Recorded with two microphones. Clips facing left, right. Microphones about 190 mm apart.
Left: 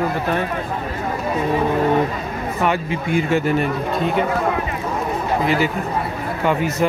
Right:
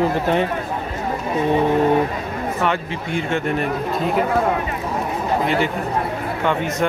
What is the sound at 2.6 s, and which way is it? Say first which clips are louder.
Speech: left 4 dB; 10° left (ahead or behind).